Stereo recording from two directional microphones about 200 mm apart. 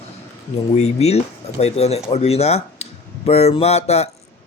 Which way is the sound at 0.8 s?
30° left (ahead or behind).